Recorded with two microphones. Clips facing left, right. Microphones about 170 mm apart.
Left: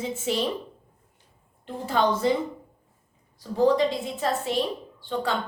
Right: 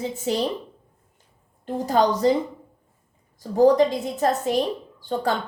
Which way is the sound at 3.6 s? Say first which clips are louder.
Right 5 dB; 40° right (ahead or behind).